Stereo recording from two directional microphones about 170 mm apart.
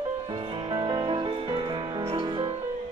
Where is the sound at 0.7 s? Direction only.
25° right (ahead or behind).